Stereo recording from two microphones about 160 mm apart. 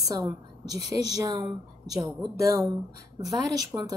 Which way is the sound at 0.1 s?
20° right (ahead or behind).